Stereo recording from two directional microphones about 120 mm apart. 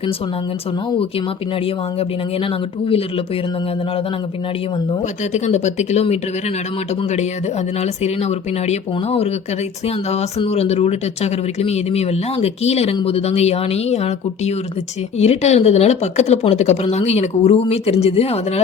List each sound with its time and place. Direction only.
5.3 s speech: 75° left (ahead or behind)
8.0 s speech: 65° left (ahead or behind)